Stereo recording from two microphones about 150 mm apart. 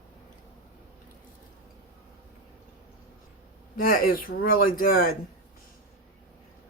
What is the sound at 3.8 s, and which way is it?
Speech, 75° left (ahead or behind).